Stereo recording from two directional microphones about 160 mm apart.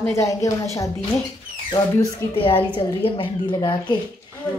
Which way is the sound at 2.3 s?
35° left (ahead or behind).